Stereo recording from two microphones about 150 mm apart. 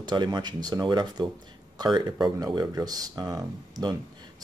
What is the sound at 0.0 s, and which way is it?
Speech, 30° right (ahead or behind).